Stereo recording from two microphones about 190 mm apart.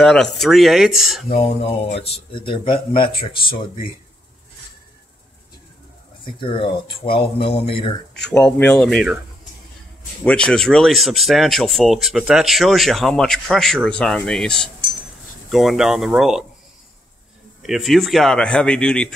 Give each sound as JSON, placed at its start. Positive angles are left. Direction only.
{"t": 0.0, "sound": "speech", "side_deg": 5}
{"t": 1.6, "sound": "speech", "side_deg": 30}
{"t": 6.2, "sound": "speech", "side_deg": 25}
{"t": 8.1, "sound": "speech", "side_deg": 5}
{"t": 10.2, "sound": "speech", "side_deg": 5}
{"t": 17.6, "sound": "speech", "side_deg": 0}